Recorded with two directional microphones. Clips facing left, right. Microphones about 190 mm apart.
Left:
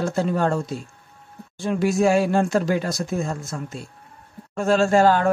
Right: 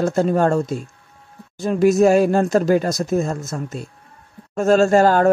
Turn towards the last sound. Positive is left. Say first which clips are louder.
# right 3 dB
turn(degrees=-45)  # may be behind; listen again after turning